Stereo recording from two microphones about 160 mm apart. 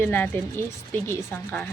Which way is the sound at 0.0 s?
15° left (ahead or behind).